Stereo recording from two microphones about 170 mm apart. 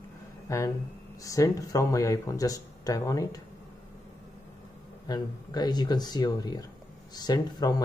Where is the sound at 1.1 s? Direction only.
20° left (ahead or behind).